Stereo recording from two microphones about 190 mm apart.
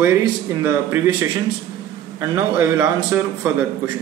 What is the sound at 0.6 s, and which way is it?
A man's voice, 15° right (ahead or behind).